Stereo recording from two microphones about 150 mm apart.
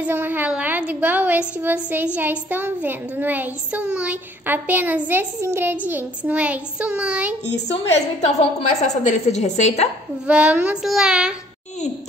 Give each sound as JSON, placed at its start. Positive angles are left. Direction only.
{"t": 0.0, "sound": "child singing", "side_deg": -10}
{"t": 7.5, "sound": "a woman's voice", "side_deg": 45}
{"t": 10.2, "sound": "child singing", "side_deg": -10}